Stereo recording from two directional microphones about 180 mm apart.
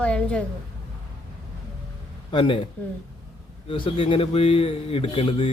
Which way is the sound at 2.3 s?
30° left (ahead or behind).